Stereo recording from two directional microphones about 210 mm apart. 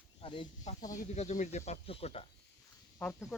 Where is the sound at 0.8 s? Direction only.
15° left (ahead or behind).